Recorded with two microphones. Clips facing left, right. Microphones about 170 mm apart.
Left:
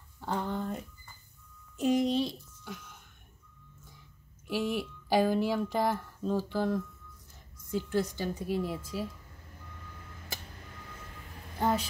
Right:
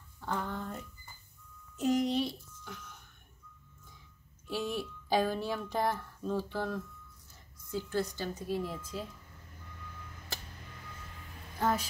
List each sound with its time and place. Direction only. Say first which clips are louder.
0.2 s a sound: left 3 dB; 20° left (ahead or behind)
1.8 s music: left 2 dB; 20° left (ahead or behind)
4.5 s speech: left 4 dB; 10° left (ahead or behind)